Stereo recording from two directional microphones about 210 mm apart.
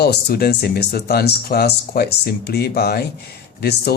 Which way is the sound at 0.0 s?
50° left (ahead or behind).